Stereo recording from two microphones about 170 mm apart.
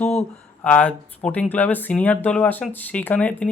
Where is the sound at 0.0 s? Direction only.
5° left (ahead or behind).